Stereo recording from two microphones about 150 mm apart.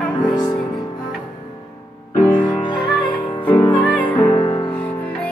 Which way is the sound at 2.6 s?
30° left (ahead or behind).